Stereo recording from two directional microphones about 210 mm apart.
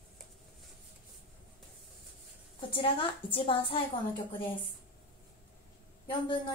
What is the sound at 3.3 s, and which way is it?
Speech, 25° left (ahead or behind).